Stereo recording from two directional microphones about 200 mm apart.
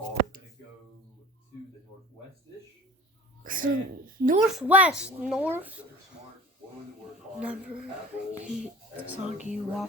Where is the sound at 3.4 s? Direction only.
40° right (ahead or behind).